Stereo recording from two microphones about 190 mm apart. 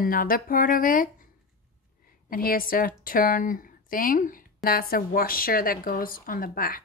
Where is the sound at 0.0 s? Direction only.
50° left (ahead or behind).